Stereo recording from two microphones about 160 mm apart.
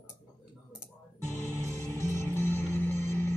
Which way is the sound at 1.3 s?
20° left (ahead or behind).